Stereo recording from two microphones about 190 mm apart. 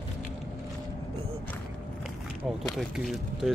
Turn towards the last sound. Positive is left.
turn(degrees=0)  # may be behind; listen again after turning